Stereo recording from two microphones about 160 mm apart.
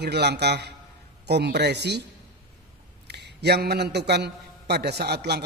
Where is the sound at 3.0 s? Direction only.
90° right.